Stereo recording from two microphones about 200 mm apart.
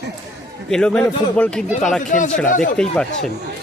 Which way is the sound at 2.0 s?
40° left (ahead or behind).